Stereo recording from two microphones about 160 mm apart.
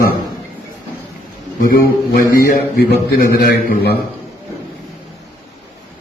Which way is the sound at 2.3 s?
70° left (ahead or behind).